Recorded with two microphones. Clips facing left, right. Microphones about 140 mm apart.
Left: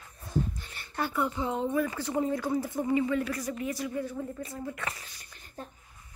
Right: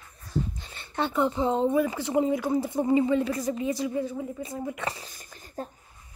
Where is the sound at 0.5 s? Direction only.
25° right (ahead or behind).